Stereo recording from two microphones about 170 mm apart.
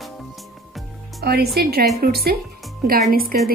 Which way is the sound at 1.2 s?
70° right (ahead or behind).